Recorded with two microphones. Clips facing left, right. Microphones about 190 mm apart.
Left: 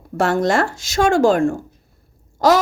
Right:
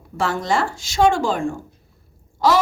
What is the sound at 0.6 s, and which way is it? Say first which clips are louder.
Speech: left 2 dB; 45° left (ahead or behind).